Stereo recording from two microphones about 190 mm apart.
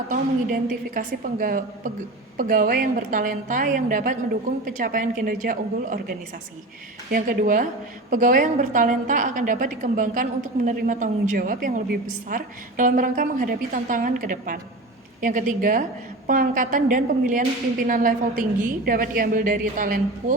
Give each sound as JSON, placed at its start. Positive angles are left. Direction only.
{"t": 0.1, "sound": "a woman's voice", "side_deg": -45}